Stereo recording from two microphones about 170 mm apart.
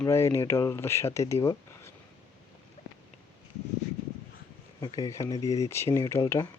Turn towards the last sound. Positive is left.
turn(degrees=15)  # may be behind; listen again after turning